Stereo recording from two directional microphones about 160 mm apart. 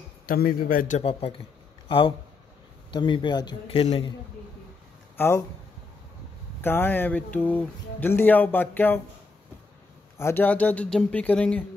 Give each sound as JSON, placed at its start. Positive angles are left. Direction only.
{"t": 0.3, "sound": "a man's voice", "side_deg": 60}
{"t": 0.9, "sound": "a man's voice", "side_deg": 35}
{"t": 5.1, "sound": "speech", "side_deg": 15}
{"t": 6.6, "sound": "speech", "side_deg": 15}
{"t": 10.1, "sound": "speech", "side_deg": 15}